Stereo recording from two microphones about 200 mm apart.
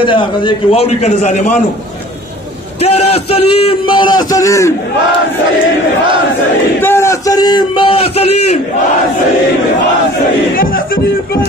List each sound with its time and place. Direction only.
0.0 s a man's voice: 25° left (ahead or behind)
2.8 s a man's voice: 30° left (ahead or behind); by 4.7 s 15° left (ahead or behind)
6.8 s a man's voice: 10° left (ahead or behind); by 8.5 s 30° left (ahead or behind)